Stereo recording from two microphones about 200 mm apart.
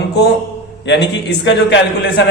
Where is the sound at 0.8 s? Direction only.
60° left (ahead or behind).